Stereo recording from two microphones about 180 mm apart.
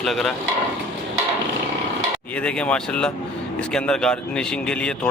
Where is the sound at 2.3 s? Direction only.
5° left (ahead or behind).